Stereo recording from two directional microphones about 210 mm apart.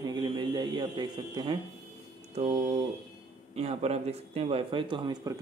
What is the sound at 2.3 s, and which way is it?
Speech, 35° right (ahead or behind).